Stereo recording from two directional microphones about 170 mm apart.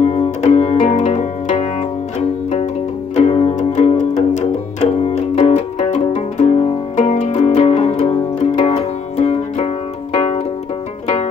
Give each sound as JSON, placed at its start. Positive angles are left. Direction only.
{"t": 0.0, "sound": "music", "side_deg": 40}